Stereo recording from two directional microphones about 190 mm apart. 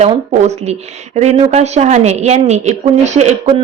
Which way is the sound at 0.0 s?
35° right (ahead or behind).